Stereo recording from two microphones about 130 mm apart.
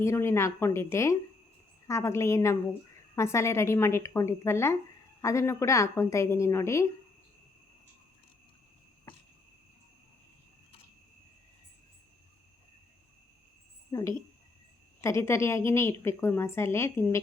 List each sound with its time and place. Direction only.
0.0 s a woman's voice: 20° left (ahead or behind)
13.9 s a woman's voice: 25° left (ahead or behind)